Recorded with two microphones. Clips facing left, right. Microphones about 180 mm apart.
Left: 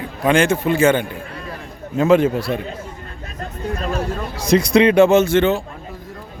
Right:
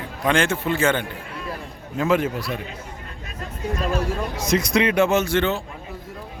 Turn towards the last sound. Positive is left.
turn(degrees=20)  # may be behind; listen again after turning